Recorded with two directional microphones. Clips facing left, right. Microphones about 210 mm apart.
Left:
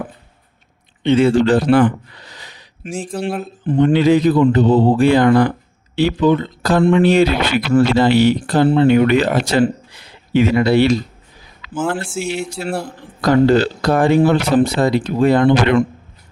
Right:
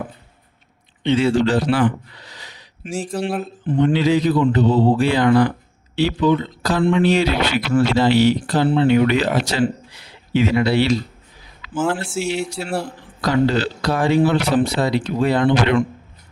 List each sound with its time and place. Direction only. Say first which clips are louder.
1.0 s speech: left 4 dB; 50° left (ahead or behind)
2.9 s speech: left 1 dB; centre (ahead or behind)
3.7 s speech: left 4 dB; 45° left (ahead or behind)
11.9 s speech: even; 5° right (ahead or behind)
13.2 s speech: left 5 dB; 50° left (ahead or behind)